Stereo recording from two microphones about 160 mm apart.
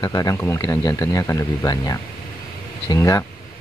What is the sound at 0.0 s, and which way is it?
Speech, 25° left (ahead or behind).